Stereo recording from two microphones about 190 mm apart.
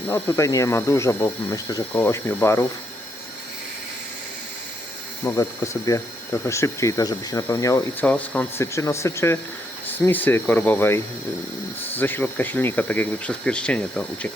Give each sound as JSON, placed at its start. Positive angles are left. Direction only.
{"t": 0.1, "sound": "speech", "side_deg": 15}
{"t": 5.2, "sound": "speech", "side_deg": 15}